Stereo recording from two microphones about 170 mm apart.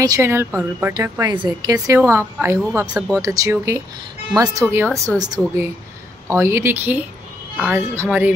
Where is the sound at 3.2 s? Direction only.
20° right (ahead or behind).